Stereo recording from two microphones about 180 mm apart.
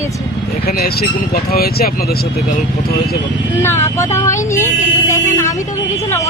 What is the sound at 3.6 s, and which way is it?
Speech, 15° left (ahead or behind).